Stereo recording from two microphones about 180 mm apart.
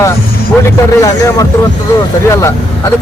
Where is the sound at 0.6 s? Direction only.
20° left (ahead or behind).